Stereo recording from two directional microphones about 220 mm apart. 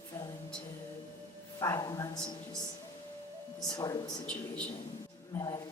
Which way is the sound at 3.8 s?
15° left (ahead or behind).